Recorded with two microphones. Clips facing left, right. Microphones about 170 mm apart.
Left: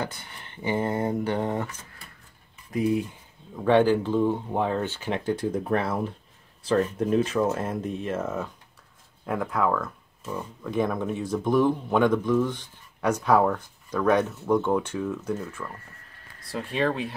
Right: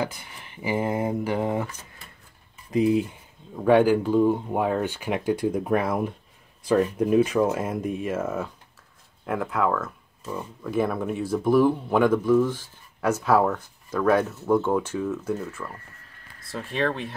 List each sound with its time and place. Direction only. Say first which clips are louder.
0.0 s speech: right 3 dB; 10° right (ahead or behind)
2.7 s speech: right 4 dB; 20° right (ahead or behind)
3.5 s speech: right 2 dB; 10° right (ahead or behind)